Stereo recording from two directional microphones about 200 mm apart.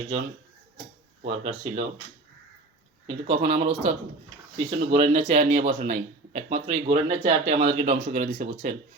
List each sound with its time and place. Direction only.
1.2 s speech: 35° right (ahead or behind)
3.1 s speech: 35° right (ahead or behind)